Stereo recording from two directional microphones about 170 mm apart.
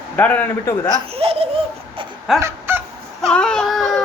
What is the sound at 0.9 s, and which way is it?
Speech, 35° right (ahead or behind).